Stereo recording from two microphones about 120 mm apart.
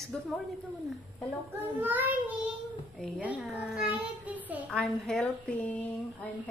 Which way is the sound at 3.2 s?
10° right (ahead or behind).